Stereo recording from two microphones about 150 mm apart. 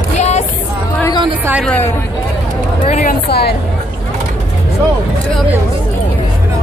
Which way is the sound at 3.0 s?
90° left.